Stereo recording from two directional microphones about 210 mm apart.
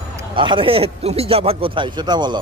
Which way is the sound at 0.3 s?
25° right (ahead or behind).